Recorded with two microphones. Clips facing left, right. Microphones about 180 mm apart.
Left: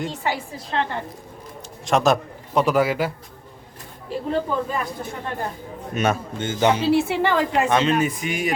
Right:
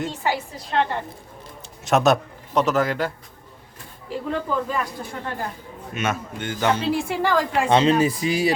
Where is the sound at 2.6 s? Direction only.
10° left (ahead or behind).